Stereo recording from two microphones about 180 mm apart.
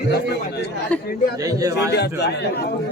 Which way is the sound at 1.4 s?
20° right (ahead or behind).